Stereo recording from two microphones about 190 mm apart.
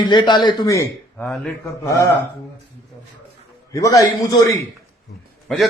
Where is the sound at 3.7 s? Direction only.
15° left (ahead or behind).